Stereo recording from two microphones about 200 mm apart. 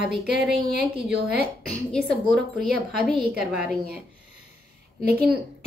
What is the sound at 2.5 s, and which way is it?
A woman's voice, centre (ahead or behind).